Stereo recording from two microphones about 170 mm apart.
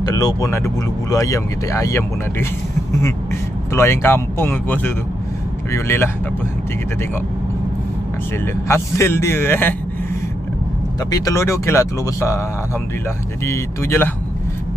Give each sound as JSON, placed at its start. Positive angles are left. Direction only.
{"t": 0.0, "sound": "speech", "side_deg": 20}
{"t": 3.7, "sound": "speech", "side_deg": 15}
{"t": 8.6, "sound": "speech", "side_deg": 15}
{"t": 11.1, "sound": "speech", "side_deg": 20}
{"t": 13.5, "sound": "speech", "side_deg": 15}